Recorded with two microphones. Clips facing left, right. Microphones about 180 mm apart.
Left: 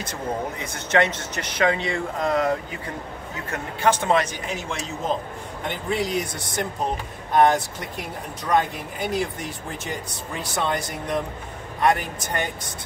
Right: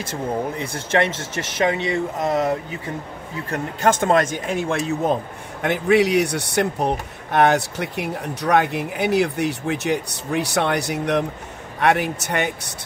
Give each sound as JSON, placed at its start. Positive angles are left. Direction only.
{"t": 0.0, "sound": "speech", "side_deg": -30}
{"t": 3.4, "sound": "speech", "side_deg": -40}
{"t": 5.6, "sound": "speech", "side_deg": -75}